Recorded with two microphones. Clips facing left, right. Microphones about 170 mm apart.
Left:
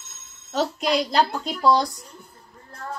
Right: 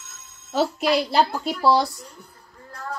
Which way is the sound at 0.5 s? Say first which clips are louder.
Right 2 dB; 5° right (ahead or behind).